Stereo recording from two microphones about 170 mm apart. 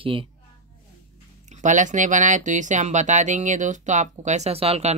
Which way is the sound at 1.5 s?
45° right (ahead or behind).